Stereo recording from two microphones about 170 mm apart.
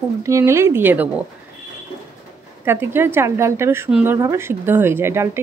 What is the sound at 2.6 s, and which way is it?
Speech, 15° right (ahead or behind).